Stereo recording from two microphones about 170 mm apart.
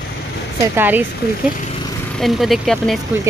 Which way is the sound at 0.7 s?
10° right (ahead or behind).